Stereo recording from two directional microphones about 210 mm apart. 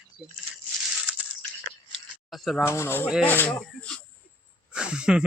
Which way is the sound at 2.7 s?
10° left (ahead or behind).